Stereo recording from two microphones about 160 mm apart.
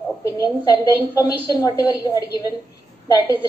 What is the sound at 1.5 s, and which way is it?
Speech, 20° left (ahead or behind).